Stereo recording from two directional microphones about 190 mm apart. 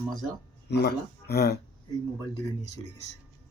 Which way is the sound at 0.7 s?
60° left (ahead or behind).